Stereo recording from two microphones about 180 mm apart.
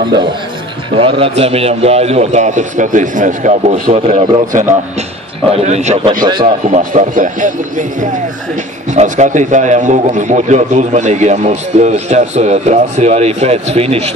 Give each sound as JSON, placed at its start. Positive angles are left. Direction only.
{"t": 0.9, "sound": "a man's voice", "side_deg": -30}
{"t": 5.5, "sound": "a man's voice", "side_deg": -35}